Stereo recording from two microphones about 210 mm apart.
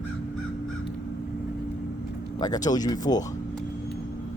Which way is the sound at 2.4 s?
20° left (ahead or behind).